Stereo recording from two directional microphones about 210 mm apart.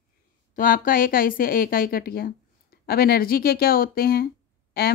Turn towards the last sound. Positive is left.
turn(degrees=45)  # may be behind; listen again after turning